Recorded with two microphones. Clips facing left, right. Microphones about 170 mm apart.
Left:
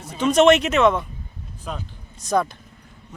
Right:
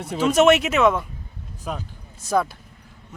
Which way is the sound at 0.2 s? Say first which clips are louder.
Left 1 dB; 5° right (ahead or behind).